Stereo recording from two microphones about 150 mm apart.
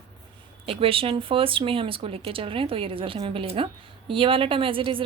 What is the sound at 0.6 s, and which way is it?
Speech, 40° right (ahead or behind).